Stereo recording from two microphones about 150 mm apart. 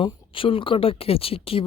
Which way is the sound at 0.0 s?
35° left (ahead or behind).